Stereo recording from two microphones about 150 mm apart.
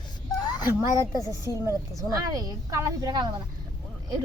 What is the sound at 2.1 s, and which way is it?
Speech, 25° right (ahead or behind).